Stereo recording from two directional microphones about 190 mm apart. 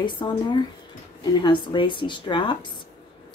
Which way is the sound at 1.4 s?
25° left (ahead or behind).